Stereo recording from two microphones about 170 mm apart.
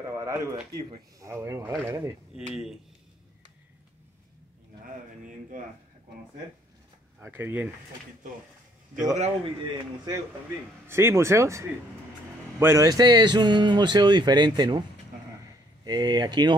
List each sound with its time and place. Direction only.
0.2 s speech: 20° right (ahead or behind)
5.5 s speech: 55° right (ahead or behind)
7.2 s speech: 15° right (ahead or behind)
9.1 s speech: 40° right (ahead or behind)
10.9 s a man's voice: 15° right (ahead or behind)
15.8 s a man's voice: 25° right (ahead or behind)